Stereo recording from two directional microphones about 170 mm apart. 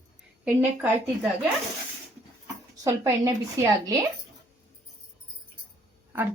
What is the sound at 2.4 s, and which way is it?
Speech, 15° right (ahead or behind).